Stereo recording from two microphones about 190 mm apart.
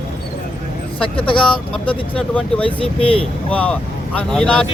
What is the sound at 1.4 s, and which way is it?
Speech, 5° left (ahead or behind).